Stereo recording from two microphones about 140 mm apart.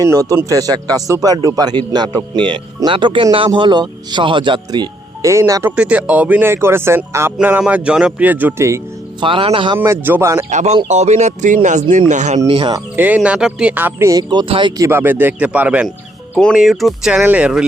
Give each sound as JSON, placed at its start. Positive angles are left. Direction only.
{"t": 0.0, "sound": "speech", "side_deg": -25}
{"t": 5.7, "sound": "speech", "side_deg": -10}
{"t": 9.2, "sound": "speech", "side_deg": -40}
{"t": 9.7, "sound": "speech", "side_deg": -20}
{"t": 10.5, "sound": "speech", "side_deg": -55}
{"t": 12.5, "sound": "speech", "side_deg": -35}
{"t": 13.0, "sound": "speech", "side_deg": -10}
{"t": 14.8, "sound": "speech", "side_deg": -15}
{"t": 16.3, "sound": "speech", "side_deg": 5}